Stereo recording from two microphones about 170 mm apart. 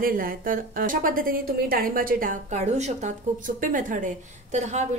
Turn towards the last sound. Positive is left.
turn(degrees=-45)  # may be behind; listen again after turning